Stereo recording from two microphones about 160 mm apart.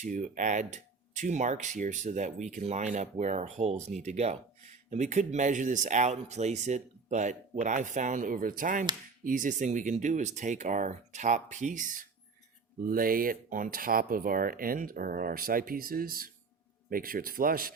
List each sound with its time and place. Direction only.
0.0 s speech: 50° right (ahead or behind)